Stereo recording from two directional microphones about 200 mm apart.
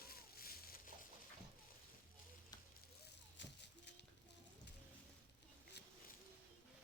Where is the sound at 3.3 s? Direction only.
60° left (ahead or behind).